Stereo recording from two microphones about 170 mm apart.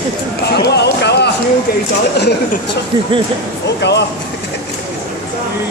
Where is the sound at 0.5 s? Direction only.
80° left.